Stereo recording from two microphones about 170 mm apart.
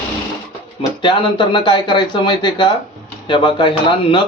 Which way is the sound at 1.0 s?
30° left (ahead or behind).